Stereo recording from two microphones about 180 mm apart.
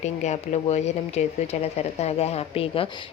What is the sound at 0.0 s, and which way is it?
Speech, 40° left (ahead or behind).